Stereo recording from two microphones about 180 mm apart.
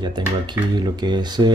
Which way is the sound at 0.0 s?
25° right (ahead or behind).